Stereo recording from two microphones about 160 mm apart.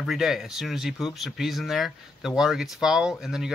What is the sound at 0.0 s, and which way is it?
Speech, centre (ahead or behind).